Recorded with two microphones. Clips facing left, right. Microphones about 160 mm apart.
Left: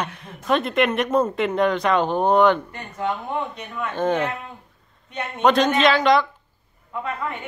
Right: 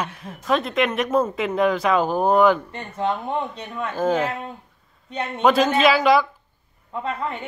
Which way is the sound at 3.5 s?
30° right (ahead or behind).